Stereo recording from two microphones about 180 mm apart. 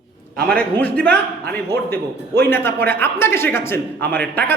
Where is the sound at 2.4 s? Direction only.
15° left (ahead or behind).